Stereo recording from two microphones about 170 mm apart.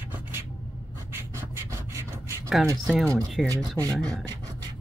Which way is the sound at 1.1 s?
15° right (ahead or behind).